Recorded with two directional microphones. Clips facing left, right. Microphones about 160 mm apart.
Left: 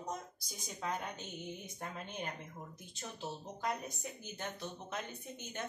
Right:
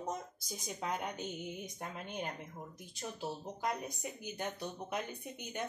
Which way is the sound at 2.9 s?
10° right (ahead or behind).